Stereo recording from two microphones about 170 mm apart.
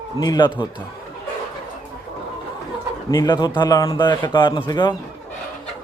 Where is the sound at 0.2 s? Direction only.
25° left (ahead or behind).